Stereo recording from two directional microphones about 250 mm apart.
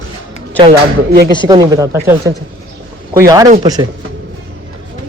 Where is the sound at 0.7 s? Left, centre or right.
Right.